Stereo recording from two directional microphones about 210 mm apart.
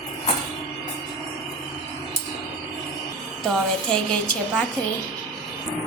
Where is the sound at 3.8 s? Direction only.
5° left (ahead or behind).